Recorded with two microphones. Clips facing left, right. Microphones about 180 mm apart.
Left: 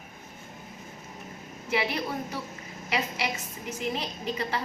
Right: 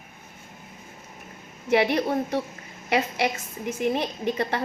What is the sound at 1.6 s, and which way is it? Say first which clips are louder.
A woman's voice: right 8 dB; 65° right (ahead or behind).